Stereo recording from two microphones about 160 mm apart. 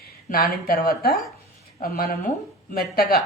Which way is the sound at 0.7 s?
75° left (ahead or behind).